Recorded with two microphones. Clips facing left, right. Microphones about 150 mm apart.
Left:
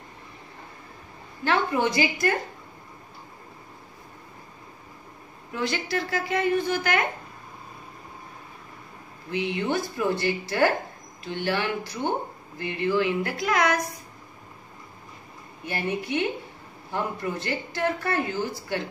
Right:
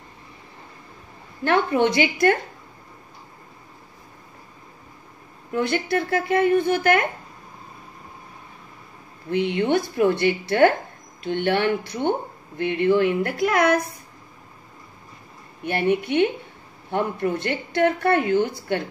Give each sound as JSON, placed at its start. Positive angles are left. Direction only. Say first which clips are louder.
{"t": 1.4, "sound": "a woman's voice", "louder": "right 4 dB", "side_deg": -55}
{"t": 5.5, "sound": "a woman's voice", "louder": "right 6 dB", "side_deg": -55}
{"t": 9.3, "sound": "a woman's voice", "louder": "right 6 dB", "side_deg": -60}
{"t": 15.6, "sound": "a woman's voice", "louder": "right 8 dB", "side_deg": -60}